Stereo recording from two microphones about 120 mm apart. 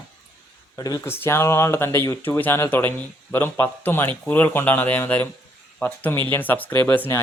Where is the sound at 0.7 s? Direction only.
30° left (ahead or behind).